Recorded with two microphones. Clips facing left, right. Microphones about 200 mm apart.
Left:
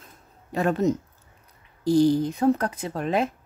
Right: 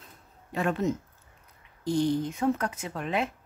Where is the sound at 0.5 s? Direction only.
40° left (ahead or behind).